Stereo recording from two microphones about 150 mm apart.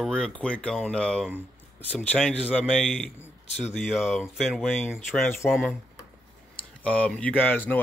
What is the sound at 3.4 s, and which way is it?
Speech, 45° left (ahead or behind).